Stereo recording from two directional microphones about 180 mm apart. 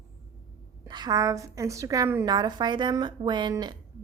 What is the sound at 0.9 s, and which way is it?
A woman's voice, 25° right (ahead or behind).